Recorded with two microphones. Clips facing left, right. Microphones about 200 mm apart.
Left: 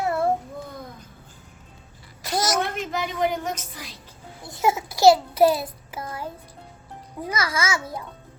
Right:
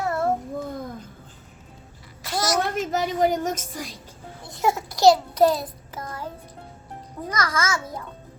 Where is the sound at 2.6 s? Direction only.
40° right (ahead or behind).